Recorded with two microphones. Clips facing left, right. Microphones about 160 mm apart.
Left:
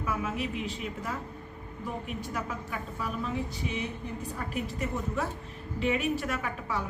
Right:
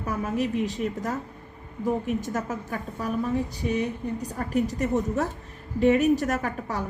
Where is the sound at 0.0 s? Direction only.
40° right (ahead or behind).